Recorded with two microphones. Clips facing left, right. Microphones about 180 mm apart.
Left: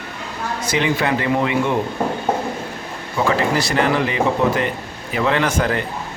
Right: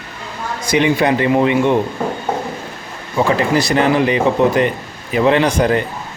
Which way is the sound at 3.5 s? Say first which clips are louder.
Right 4 dB; 20° right (ahead or behind).